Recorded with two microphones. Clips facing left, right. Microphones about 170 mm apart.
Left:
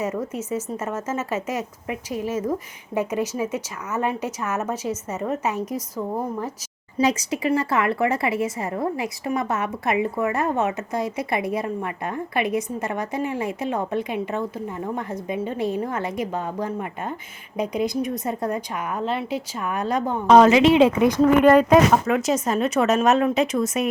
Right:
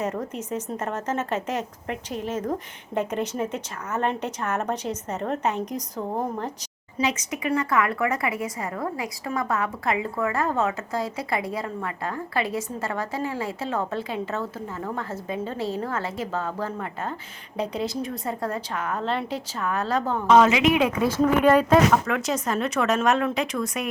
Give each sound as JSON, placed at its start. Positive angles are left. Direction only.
{"t": 0.3, "sound": "a woman's voice", "side_deg": 5}
{"t": 7.0, "sound": "a woman's voice", "side_deg": 35}
{"t": 20.2, "sound": "a woman's voice", "side_deg": 35}
{"t": 21.2, "sound": "speech", "side_deg": 0}
{"t": 21.9, "sound": "a woman's voice", "side_deg": 20}